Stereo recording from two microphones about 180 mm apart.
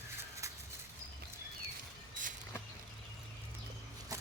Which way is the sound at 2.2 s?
45° right (ahead or behind).